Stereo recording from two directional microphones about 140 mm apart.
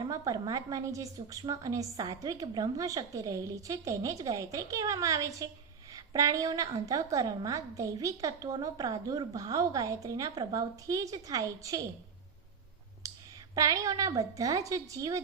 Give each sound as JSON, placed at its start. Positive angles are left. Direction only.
{"t": 0.1, "sound": "a woman's voice", "side_deg": -25}
{"t": 13.0, "sound": "a sound", "side_deg": -20}
{"t": 13.6, "sound": "a woman's voice", "side_deg": -25}